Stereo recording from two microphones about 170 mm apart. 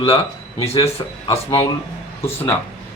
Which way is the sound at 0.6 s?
35° left (ahead or behind).